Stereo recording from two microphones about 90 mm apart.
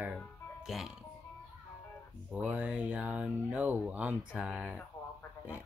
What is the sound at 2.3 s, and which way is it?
Speech, 15° right (ahead or behind).